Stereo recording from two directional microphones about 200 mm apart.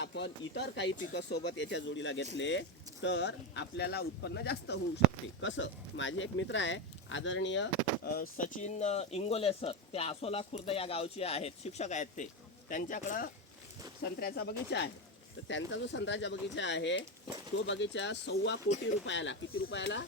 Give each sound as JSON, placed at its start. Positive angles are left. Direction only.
{"t": 0.0, "sound": "speech", "side_deg": 60}
{"t": 5.4, "sound": "speech", "side_deg": 70}